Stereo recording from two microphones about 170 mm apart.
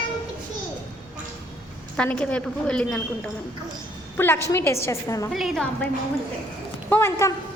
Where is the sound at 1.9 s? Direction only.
5° left (ahead or behind).